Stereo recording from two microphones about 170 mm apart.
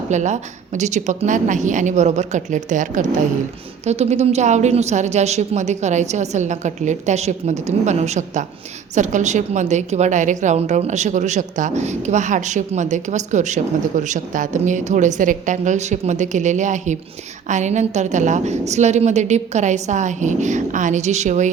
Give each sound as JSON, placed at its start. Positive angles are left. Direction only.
{"t": 0.1, "sound": "a woman's voice", "side_deg": -45}